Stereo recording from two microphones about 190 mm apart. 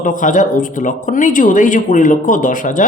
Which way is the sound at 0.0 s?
45° left (ahead or behind).